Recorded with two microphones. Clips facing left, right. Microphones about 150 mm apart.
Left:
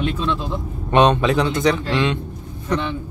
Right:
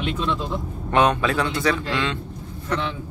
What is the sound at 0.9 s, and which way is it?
A man's voice, 20° left (ahead or behind).